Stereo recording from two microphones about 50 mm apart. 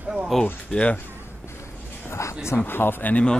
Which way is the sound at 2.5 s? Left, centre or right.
Left.